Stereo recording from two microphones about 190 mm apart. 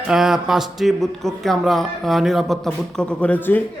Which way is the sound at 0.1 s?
Centre (ahead or behind).